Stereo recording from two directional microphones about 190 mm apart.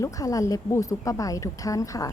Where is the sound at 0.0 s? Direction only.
20° left (ahead or behind).